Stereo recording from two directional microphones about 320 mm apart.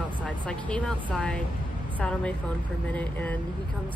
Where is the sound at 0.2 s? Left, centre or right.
Centre.